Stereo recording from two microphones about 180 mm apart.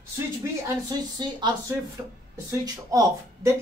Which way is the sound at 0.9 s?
25° right (ahead or behind).